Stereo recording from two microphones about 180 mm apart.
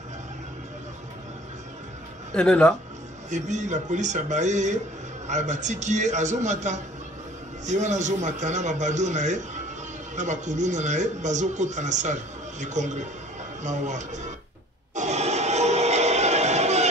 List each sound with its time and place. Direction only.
2.3 s speech: 5° left (ahead or behind)
3.3 s a man's voice: 40° right (ahead or behind)
15.0 s music: 40° right (ahead or behind)